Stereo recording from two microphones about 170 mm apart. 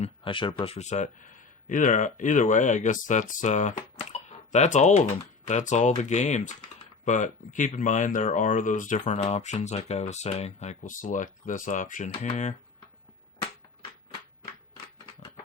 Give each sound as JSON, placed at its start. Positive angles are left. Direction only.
{"t": 0.0, "sound": "speech", "side_deg": 30}